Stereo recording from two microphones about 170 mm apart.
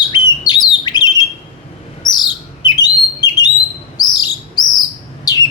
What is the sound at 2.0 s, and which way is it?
Chirp, 25° left (ahead or behind).